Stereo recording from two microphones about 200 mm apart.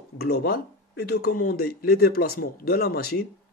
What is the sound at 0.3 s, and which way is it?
Speech, 55° left (ahead or behind).